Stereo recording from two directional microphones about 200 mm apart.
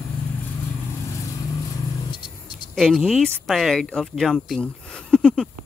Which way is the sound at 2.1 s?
25° left (ahead or behind).